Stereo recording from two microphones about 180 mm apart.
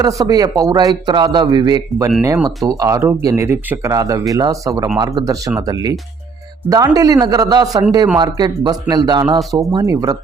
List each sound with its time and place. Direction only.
0.0 s a man's voice: 20° right (ahead or behind)